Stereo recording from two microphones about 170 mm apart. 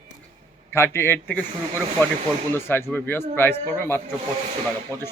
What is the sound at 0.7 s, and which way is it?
Speech, 15° left (ahead or behind).